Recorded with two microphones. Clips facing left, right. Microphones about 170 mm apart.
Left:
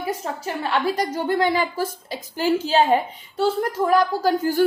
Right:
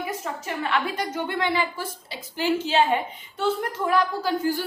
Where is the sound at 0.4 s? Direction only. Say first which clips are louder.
Left 4 dB; 35° left (ahead or behind).